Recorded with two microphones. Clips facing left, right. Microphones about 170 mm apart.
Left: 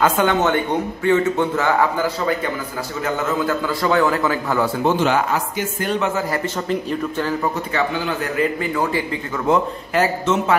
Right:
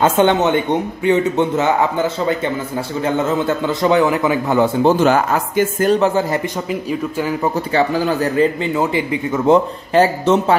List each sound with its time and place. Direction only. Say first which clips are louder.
0.0 s a man's voice: right 4 dB; 25° right (ahead or behind)
4.8 s speech: right 3 dB; 45° right (ahead or behind)
5.9 s speech: right 5 dB; 35° right (ahead or behind)
6.3 s speech: right 1 dB; 15° right (ahead or behind)
7.7 s a man's voice: right 6 dB; 35° right (ahead or behind)